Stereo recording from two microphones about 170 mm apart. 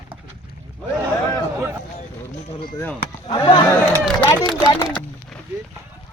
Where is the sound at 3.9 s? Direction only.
15° left (ahead or behind).